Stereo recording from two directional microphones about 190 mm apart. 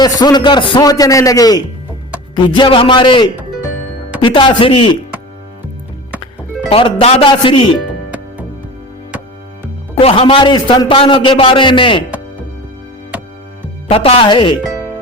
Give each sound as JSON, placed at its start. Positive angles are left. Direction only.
{"t": 0.0, "sound": "a man's voice", "side_deg": 20}
{"t": 6.7, "sound": "a man's voice", "side_deg": 30}
{"t": 9.9, "sound": "a man's voice", "side_deg": 30}
{"t": 13.8, "sound": "a man's voice", "side_deg": 30}